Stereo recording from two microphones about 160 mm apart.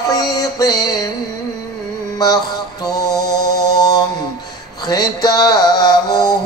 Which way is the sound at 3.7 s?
25° left (ahead or behind).